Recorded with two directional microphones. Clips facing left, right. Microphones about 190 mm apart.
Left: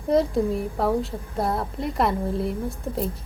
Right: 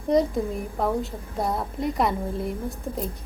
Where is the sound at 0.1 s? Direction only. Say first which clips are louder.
Left 1 dB; centre (ahead or behind).